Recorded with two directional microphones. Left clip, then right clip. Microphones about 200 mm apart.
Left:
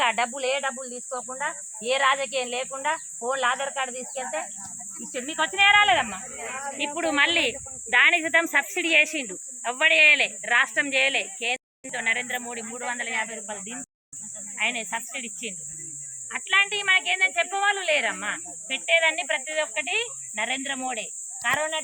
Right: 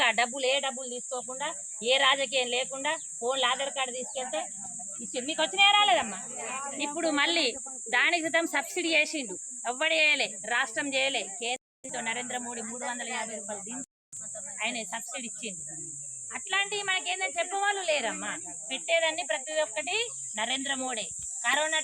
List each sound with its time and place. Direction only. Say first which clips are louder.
0.0 s a woman's voice: left 2 dB; centre (ahead or behind)
6.3 s speech: left 3 dB; 45° right (ahead or behind)
6.9 s speech: left 5 dB; 5° right (ahead or behind); by 13.8 s 10° left (ahead or behind)
14.6 s a woman's voice: left 7 dB; centre (ahead or behind)
21.5 s a woman's voice: left 1 dB; centre (ahead or behind)